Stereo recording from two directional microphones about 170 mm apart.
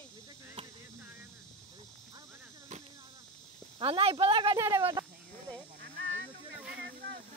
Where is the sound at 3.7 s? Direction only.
35° right (ahead or behind).